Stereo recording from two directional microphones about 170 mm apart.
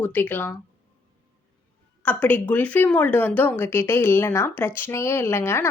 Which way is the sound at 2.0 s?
10° left (ahead or behind).